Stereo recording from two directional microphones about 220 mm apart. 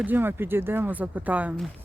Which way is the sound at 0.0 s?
10° right (ahead or behind).